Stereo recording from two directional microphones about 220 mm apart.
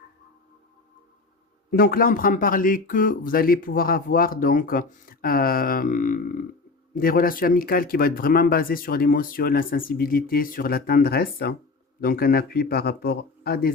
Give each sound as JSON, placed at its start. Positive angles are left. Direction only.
{"t": 1.7, "sound": "speech", "side_deg": 40}